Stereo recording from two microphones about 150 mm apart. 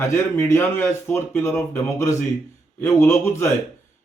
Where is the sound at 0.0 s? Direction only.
20° left (ahead or behind).